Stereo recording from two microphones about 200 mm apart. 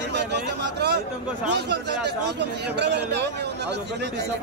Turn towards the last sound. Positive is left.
turn(degrees=-55)  # may be behind; listen again after turning